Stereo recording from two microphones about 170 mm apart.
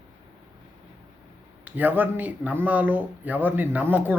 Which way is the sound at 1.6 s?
10° right (ahead or behind).